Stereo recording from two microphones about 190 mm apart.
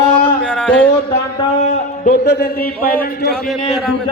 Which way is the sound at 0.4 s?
5° left (ahead or behind).